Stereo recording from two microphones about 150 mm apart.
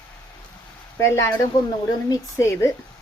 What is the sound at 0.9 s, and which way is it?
A woman's voice, 20° left (ahead or behind).